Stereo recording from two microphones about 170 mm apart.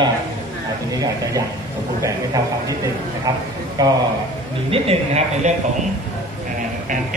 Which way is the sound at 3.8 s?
25° right (ahead or behind).